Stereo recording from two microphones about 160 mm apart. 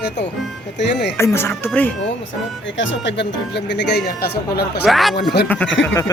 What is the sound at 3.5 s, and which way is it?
Speech, 90° left.